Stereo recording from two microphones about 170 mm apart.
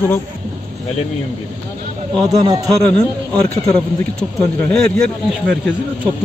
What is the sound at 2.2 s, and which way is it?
Speech, 20° right (ahead or behind).